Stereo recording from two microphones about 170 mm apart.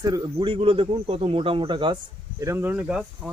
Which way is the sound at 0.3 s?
30° right (ahead or behind).